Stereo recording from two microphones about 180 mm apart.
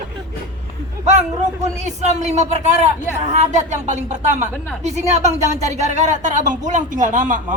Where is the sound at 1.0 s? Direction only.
40° right (ahead or behind).